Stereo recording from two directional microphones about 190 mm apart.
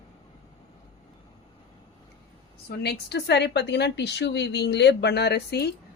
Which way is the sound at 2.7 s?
60° left (ahead or behind).